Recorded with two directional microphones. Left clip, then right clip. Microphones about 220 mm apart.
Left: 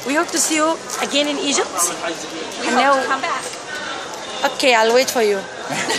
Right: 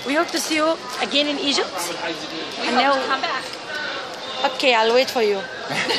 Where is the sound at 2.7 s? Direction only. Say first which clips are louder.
Left 3 dB; 5° left (ahead or behind).